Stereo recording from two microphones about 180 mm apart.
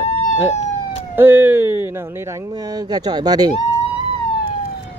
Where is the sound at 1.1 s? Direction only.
10° right (ahead or behind).